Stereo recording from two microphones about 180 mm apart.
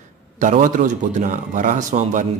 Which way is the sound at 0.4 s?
45° right (ahead or behind).